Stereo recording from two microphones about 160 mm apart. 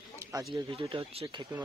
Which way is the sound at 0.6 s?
35° right (ahead or behind).